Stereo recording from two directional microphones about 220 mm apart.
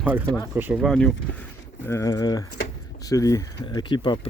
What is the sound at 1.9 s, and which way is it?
Speech, 15° left (ahead or behind).